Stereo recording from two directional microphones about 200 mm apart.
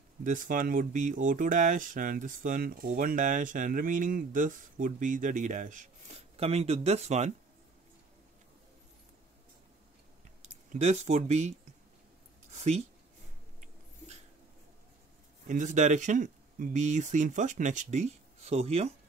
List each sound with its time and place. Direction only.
0.2 s speech: 40° right (ahead or behind)
10.4 s speech: 35° right (ahead or behind)
12.4 s a sound: 35° right (ahead or behind)
15.4 s speech: 40° right (ahead or behind)